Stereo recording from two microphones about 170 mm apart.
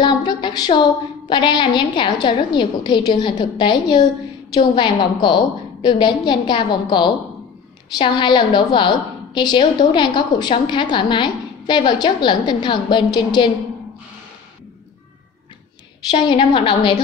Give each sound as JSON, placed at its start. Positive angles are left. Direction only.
{"t": 0.0, "sound": "a sound", "side_deg": 25}
{"t": 1.3, "sound": "a woman's voice", "side_deg": 25}
{"t": 16.1, "sound": "a woman's voice", "side_deg": 25}